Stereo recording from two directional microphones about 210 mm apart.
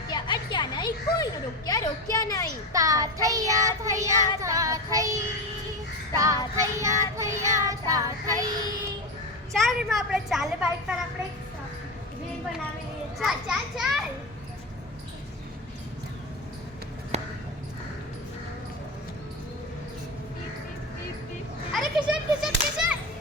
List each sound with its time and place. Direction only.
0.1 s a sound: 20° left (ahead or behind)
2.7 s child singing: 15° right (ahead or behind)
9.6 s a woman's voice: centre (ahead or behind)
13.1 s a woman's voice: centre (ahead or behind)
17.1 s basketball bounce: 30° right (ahead or behind)
21.7 s children playing: centre (ahead or behind)